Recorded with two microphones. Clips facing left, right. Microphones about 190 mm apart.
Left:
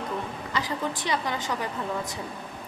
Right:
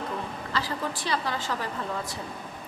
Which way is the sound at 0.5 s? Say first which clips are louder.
Left 1 dB; 20° left (ahead or behind).